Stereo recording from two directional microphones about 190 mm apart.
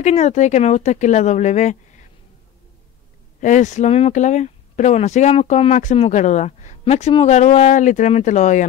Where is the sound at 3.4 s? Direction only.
40° left (ahead or behind).